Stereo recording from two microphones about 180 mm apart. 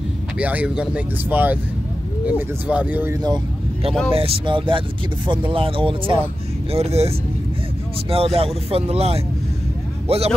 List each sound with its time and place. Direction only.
0.4 s speech: 10° right (ahead or behind)
4.1 s speech: 30° right (ahead or behind)